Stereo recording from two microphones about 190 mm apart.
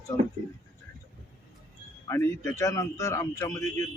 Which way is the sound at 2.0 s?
15° left (ahead or behind).